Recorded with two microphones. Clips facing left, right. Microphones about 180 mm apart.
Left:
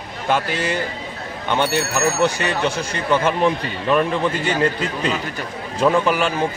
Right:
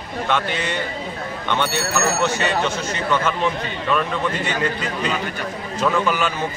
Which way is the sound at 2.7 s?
30° left (ahead or behind).